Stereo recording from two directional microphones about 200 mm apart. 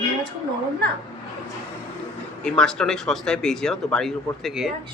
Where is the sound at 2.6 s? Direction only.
5° left (ahead or behind).